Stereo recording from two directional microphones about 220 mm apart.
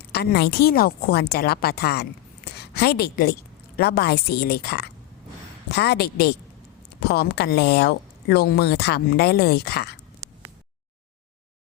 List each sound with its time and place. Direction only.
0.1 s a woman's voice: 45° left (ahead or behind)